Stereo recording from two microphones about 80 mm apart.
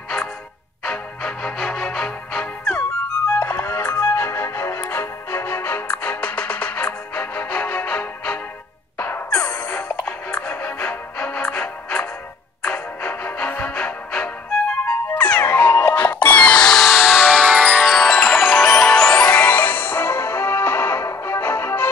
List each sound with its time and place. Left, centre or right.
0.8 s music: centre
3.3 s music: left